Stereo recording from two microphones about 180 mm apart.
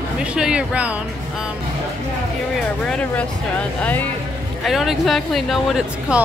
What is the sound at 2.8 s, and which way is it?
Speech, 5° left (ahead or behind).